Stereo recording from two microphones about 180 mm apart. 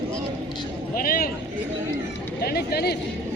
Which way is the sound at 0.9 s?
55° left (ahead or behind).